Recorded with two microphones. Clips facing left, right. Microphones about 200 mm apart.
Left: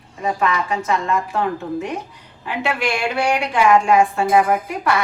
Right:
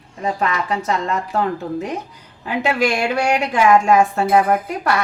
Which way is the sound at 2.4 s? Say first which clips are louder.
Right 4 dB; 40° right (ahead or behind).